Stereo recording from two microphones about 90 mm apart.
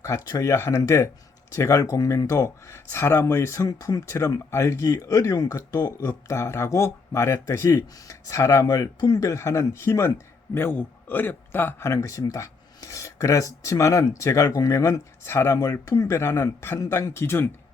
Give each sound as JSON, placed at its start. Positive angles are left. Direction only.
{"t": 0.0, "sound": "speech", "side_deg": 40}